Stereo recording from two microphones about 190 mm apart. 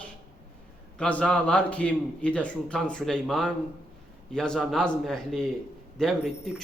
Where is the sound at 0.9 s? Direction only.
5° left (ahead or behind).